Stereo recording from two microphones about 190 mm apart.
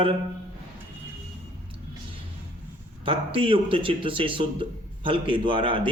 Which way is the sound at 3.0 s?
30° right (ahead or behind).